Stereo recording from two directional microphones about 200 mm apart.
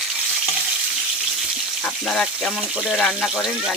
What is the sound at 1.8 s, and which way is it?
Speech, centre (ahead or behind).